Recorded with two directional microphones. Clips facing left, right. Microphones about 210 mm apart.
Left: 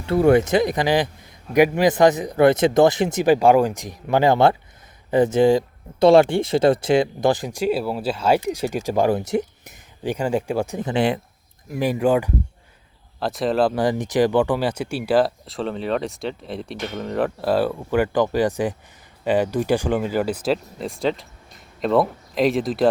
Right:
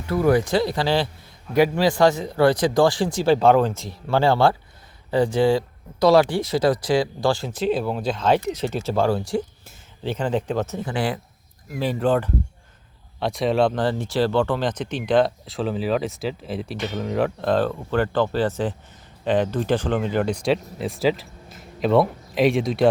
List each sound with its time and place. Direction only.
0.0 s a man's voice: 25° left (ahead or behind)
13.1 s speech: centre (ahead or behind)